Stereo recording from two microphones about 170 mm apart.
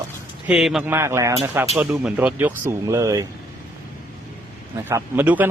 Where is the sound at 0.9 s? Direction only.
15° right (ahead or behind).